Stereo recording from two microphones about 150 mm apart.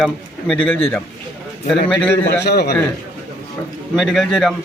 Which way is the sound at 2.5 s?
90° left.